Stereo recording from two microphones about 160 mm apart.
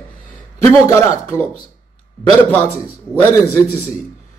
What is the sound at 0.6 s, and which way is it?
Speech, 20° left (ahead or behind).